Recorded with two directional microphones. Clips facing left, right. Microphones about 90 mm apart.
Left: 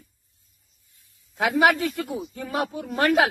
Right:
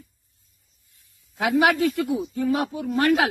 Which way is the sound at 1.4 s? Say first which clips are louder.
Right 1 dB; 40° left (ahead or behind).